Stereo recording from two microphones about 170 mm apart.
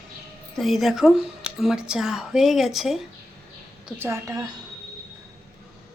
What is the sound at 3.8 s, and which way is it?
Speech, 15° right (ahead or behind).